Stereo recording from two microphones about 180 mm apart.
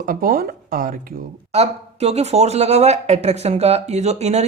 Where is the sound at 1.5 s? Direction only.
35° right (ahead or behind).